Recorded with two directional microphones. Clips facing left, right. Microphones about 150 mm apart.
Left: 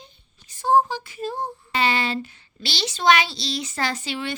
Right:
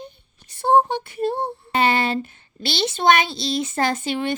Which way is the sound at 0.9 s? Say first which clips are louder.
Right 6 dB; 60° right (ahead or behind).